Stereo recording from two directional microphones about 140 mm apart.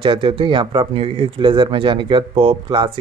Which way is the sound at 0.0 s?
35° right (ahead or behind).